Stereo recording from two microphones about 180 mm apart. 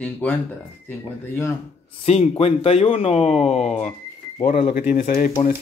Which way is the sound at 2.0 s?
35° left (ahead or behind).